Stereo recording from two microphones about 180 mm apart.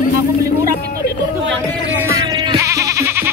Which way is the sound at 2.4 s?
20° right (ahead or behind).